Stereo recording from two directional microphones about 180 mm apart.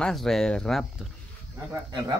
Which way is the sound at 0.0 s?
Centre (ahead or behind).